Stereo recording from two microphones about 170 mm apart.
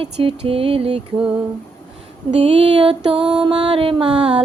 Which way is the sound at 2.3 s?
35° right (ahead or behind).